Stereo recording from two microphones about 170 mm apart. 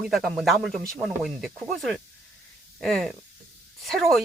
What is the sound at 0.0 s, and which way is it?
Speech, centre (ahead or behind).